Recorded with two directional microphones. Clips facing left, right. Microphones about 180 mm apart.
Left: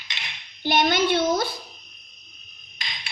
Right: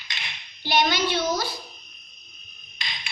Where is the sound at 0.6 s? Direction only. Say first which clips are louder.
Left 2 dB; 50° left (ahead or behind).